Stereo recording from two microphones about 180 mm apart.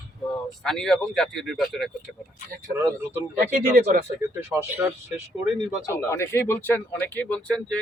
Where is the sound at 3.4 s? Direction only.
50° right (ahead or behind).